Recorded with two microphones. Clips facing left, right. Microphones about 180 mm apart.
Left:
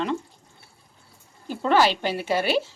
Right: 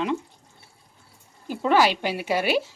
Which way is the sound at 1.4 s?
10° right (ahead or behind).